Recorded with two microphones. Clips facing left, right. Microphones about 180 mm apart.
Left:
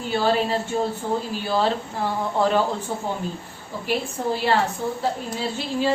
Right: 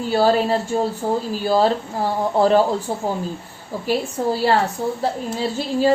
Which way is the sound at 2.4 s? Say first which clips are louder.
Right 5 dB; 40° right (ahead or behind).